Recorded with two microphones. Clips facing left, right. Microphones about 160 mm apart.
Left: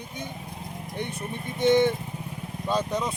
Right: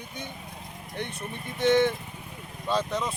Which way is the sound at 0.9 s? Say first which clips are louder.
Left 2 dB; 15° left (ahead or behind).